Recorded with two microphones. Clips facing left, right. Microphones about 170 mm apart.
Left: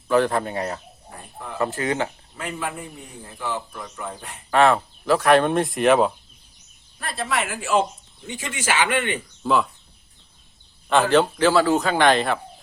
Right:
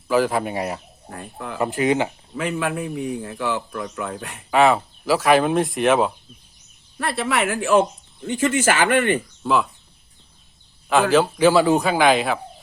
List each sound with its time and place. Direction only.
0.1 s speech: 5° right (ahead or behind)
1.1 s speech: 90° right
1.5 s speech: 15° right (ahead or behind)
2.3 s speech: 90° right
4.5 s speech: 5° right (ahead or behind)
7.0 s speech: 70° right (ahead or behind); by 9.2 s 50° right (ahead or behind)
9.4 s speech: centre (ahead or behind)
10.8 s speech: 5° right (ahead or behind)
11.4 s speech: 15° right (ahead or behind)